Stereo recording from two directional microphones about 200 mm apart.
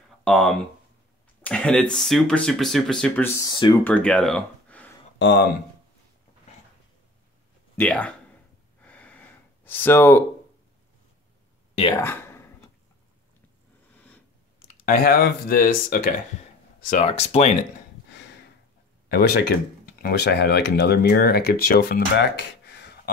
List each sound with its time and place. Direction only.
0.2 s speech: centre (ahead or behind)
3.3 s speech: 20° left (ahead or behind)
3.8 s speech: 5° left (ahead or behind)
5.2 s speech: 55° left (ahead or behind)
7.7 s speech: 5° left (ahead or behind)
8.8 s gasp: 5° left (ahead or behind)
11.9 s speech: 10° left (ahead or behind)
14.9 s speech: 50° left (ahead or behind)
16.9 s speech: 30° left (ahead or behind)
19.0 s speech: 50° left (ahead or behind)